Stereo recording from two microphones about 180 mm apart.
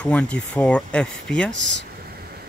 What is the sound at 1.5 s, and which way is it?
Speech, 90° right.